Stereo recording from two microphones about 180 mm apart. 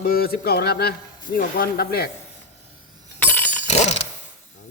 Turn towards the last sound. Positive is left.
turn(degrees=40)  # may be behind; listen again after turning